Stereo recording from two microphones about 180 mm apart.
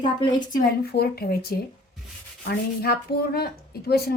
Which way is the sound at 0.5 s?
55° left (ahead or behind).